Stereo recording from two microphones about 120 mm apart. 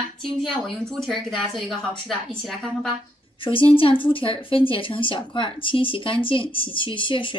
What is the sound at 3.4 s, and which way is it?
A woman's voice, 45° left (ahead or behind).